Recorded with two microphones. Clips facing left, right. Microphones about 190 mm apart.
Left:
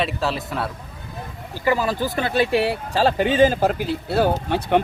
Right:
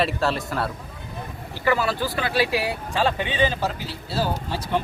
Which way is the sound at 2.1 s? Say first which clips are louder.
Left 6 dB; 50° left (ahead or behind).